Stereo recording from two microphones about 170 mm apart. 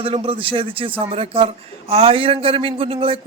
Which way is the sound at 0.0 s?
30° right (ahead or behind).